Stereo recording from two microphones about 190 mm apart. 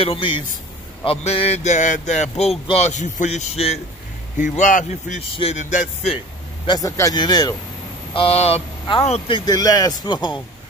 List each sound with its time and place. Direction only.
0.0 s speech: 25° left (ahead or behind)
6.6 s speech: 20° left (ahead or behind)
9.5 s speech: 20° left (ahead or behind)